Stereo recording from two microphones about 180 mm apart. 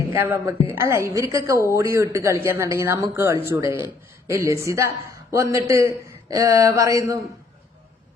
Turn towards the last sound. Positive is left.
turn(degrees=-20)  # may be behind; listen again after turning